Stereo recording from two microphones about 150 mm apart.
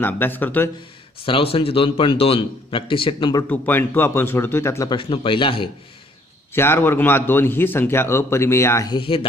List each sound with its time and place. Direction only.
0.0 s a man's voice: 15° left (ahead or behind)
1.2 s a man's voice: 40° left (ahead or behind)
3.4 s a man's voice: 10° left (ahead or behind)
4.9 s a man's voice: 35° left (ahead or behind)
6.5 s a man's voice: 15° left (ahead or behind)
8.9 s a man's voice: 35° left (ahead or behind)